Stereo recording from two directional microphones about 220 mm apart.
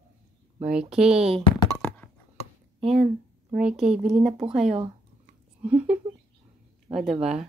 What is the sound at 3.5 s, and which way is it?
Speech, centre (ahead or behind).